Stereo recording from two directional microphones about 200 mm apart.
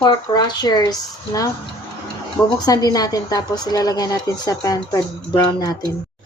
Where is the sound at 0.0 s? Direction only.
20° left (ahead or behind).